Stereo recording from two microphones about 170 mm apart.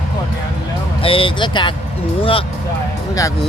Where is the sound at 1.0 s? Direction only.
30° left (ahead or behind).